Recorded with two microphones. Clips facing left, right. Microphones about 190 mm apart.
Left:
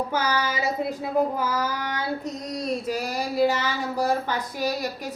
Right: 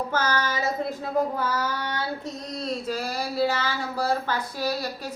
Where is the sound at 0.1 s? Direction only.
15° left (ahead or behind).